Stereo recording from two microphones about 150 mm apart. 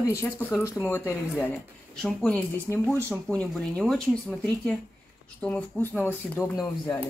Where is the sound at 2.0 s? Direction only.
5° left (ahead or behind).